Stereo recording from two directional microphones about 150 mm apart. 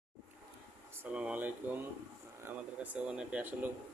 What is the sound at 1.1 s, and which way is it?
Speech, 10° right (ahead or behind).